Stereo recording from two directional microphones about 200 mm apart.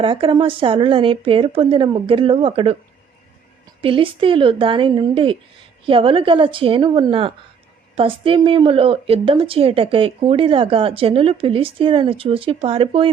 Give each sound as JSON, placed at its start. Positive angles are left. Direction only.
{"t": 0.0, "sound": "a woman's voice", "side_deg": -25}
{"t": 3.8, "sound": "a woman's voice", "side_deg": -25}